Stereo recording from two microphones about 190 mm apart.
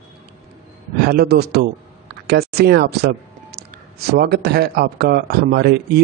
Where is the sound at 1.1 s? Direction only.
55° right (ahead or behind).